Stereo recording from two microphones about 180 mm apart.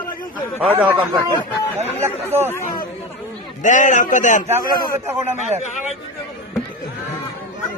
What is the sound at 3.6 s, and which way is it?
Speech, 45° left (ahead or behind).